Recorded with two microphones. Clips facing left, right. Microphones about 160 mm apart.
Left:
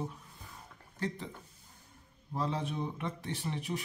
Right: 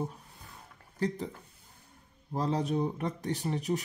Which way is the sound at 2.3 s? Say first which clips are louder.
Right 5 dB; 40° right (ahead or behind).